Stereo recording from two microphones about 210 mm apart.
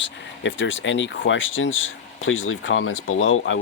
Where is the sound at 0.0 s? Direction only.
60° left (ahead or behind).